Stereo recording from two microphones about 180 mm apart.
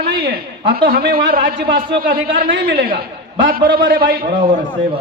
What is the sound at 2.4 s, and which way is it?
A man's voice, 55° right (ahead or behind).